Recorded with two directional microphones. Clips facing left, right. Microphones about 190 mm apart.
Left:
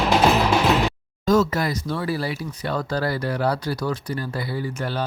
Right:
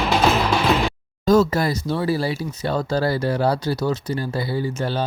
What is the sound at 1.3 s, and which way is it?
Speech, 30° right (ahead or behind).